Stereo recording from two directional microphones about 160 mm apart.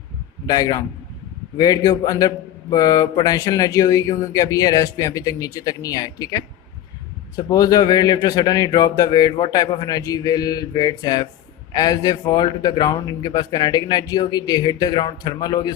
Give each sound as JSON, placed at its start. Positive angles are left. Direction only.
{"t": 0.4, "sound": "a man's voice", "side_deg": 25}